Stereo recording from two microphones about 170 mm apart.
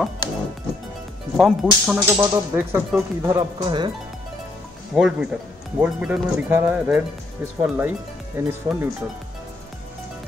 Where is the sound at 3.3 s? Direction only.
25° right (ahead or behind).